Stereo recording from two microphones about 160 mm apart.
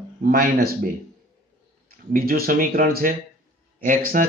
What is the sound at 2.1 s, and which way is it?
Speech, 70° right (ahead or behind).